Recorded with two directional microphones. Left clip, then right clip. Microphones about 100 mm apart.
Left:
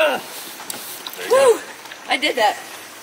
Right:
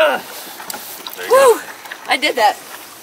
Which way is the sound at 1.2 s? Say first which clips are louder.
Right 4 dB; 15° right (ahead or behind).